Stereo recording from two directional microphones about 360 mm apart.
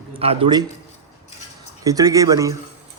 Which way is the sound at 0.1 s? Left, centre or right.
Centre.